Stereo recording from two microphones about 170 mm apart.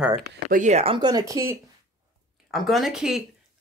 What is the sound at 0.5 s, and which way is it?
Speech, 45° right (ahead or behind).